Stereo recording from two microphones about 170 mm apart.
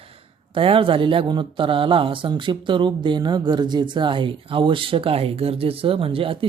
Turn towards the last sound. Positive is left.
turn(degrees=-30)  # may be behind; listen again after turning